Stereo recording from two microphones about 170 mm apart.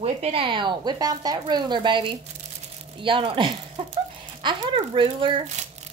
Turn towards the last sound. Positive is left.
turn(degrees=-35)  # may be behind; listen again after turning